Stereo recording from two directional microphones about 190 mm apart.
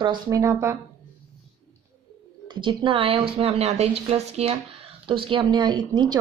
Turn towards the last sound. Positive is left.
turn(degrees=-25)  # may be behind; listen again after turning